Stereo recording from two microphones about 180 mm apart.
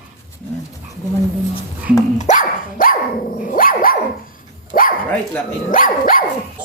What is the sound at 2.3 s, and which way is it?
Dog, 50° left (ahead or behind).